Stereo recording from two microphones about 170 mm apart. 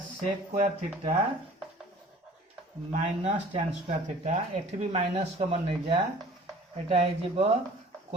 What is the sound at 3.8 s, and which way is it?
Speech, 40° right (ahead or behind).